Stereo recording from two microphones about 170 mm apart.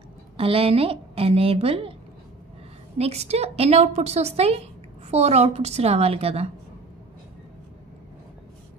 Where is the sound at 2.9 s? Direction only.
35° right (ahead or behind).